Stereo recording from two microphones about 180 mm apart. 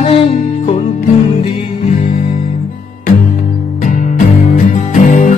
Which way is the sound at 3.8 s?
45° left (ahead or behind).